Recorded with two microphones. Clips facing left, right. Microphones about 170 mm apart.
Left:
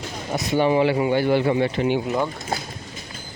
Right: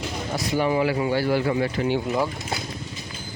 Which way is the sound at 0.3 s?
25° left (ahead or behind).